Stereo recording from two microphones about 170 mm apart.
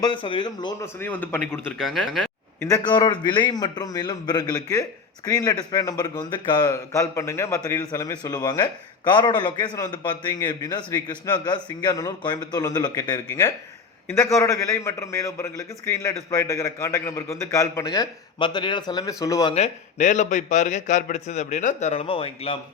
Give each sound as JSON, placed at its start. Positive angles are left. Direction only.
{"t": 0.0, "sound": "a man's voice", "side_deg": 30}
{"t": 0.9, "sound": "speech", "side_deg": 10}
{"t": 1.8, "sound": "speech", "side_deg": 0}
{"t": 2.6, "sound": "a man's voice", "side_deg": 20}
{"t": 19.5, "sound": "speech", "side_deg": 40}